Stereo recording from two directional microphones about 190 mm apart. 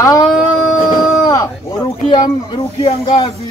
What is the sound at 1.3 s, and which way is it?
Speech, 25° left (ahead or behind).